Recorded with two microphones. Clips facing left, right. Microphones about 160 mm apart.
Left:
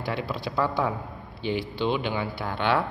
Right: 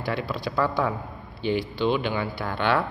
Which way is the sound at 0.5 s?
20° left (ahead or behind).